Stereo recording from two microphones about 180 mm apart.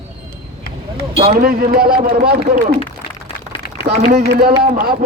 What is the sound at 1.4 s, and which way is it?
Speech, 55° right (ahead or behind).